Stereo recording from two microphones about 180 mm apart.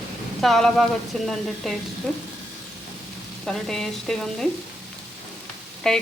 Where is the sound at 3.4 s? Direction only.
Centre (ahead or behind).